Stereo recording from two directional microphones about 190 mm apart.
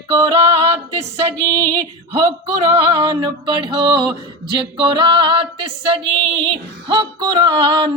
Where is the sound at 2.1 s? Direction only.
30° right (ahead or behind).